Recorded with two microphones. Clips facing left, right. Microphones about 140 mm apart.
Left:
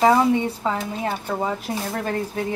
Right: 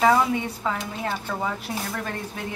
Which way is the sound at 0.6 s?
25° left (ahead or behind).